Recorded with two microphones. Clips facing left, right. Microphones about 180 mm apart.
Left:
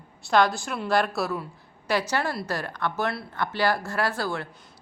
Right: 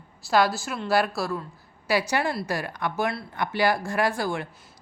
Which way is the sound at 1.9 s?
10° right (ahead or behind).